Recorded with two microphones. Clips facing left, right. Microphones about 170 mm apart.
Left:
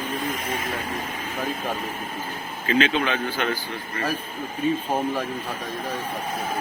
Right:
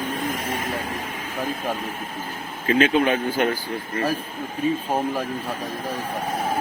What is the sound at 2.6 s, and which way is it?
Speech, 45° right (ahead or behind).